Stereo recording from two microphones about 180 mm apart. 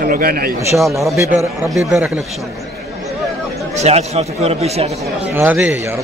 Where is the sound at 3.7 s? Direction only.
35° right (ahead or behind).